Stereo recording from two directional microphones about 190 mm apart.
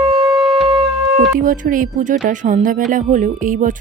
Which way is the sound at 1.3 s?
45° right (ahead or behind).